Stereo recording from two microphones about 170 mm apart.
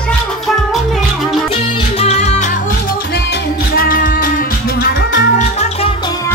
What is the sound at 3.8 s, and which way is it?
Music, 55° left (ahead or behind).